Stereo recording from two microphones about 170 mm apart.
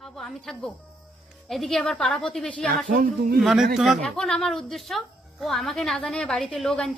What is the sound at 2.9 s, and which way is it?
Speech, 55° right (ahead or behind).